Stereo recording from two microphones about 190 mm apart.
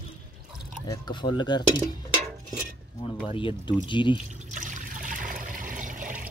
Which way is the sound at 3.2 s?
25° left (ahead or behind).